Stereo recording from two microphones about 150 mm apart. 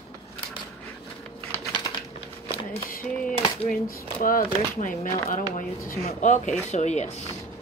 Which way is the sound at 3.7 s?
70° left (ahead or behind).